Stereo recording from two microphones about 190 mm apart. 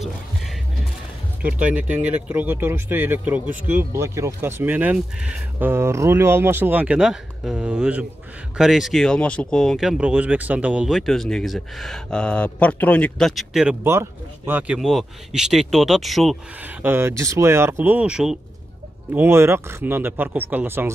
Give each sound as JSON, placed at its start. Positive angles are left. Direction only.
{"t": 1.7, "sound": "speech", "side_deg": -10}
{"t": 13.8, "sound": "speech", "side_deg": -10}
{"t": 16.8, "sound": "speech", "side_deg": -10}